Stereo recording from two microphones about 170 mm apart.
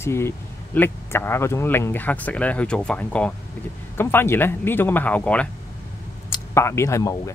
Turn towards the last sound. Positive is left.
turn(degrees=15)  # may be behind; listen again after turning